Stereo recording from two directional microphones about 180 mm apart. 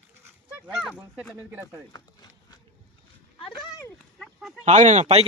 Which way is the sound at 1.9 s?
20° left (ahead or behind).